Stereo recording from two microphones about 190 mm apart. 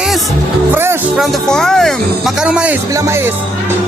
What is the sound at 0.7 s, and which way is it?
Music, 10° right (ahead or behind).